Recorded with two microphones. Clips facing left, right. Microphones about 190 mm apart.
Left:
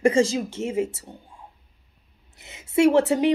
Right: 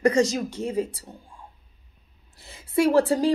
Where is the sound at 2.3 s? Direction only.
20° left (ahead or behind).